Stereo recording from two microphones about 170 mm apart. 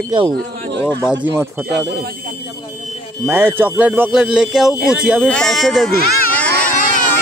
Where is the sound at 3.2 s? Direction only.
10° right (ahead or behind).